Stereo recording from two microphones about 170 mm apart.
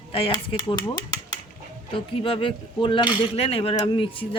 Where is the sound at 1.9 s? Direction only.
30° left (ahead or behind).